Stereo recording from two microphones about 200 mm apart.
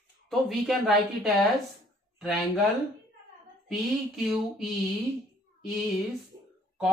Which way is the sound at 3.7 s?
Centre (ahead or behind).